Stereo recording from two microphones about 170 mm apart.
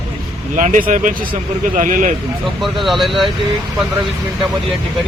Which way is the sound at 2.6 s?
Centre (ahead or behind).